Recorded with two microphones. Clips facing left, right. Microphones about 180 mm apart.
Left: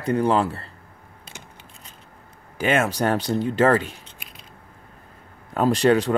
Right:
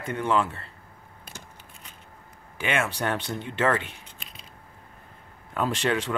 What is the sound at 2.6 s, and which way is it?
Speech, 40° left (ahead or behind).